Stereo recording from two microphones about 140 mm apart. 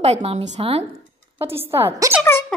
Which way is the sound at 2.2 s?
10° left (ahead or behind).